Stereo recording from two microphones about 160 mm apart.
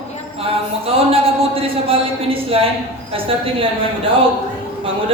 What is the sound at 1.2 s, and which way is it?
Speech, 35° right (ahead or behind).